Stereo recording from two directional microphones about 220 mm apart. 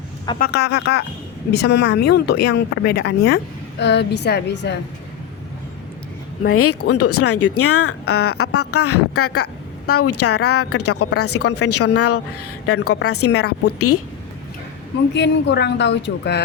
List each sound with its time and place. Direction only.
0.3 s speech: 45° left (ahead or behind)
6.5 s a woman's voice: 85° left
15.1 s speech: 50° left (ahead or behind)